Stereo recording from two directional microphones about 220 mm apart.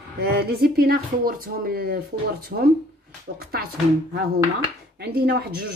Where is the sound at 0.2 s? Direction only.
45° right (ahead or behind).